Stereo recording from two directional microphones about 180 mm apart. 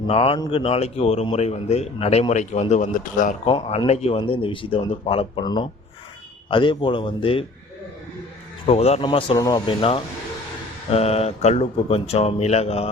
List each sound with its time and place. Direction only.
0.1 s a man's voice: 30° left (ahead or behind)
3.4 s speech: 25° left (ahead or behind)
8.6 s a man's voice: 35° left (ahead or behind)